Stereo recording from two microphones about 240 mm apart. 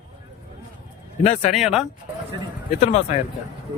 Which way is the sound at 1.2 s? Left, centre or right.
Left.